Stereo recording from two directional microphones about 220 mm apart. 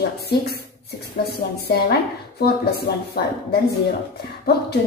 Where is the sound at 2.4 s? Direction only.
45° left (ahead or behind).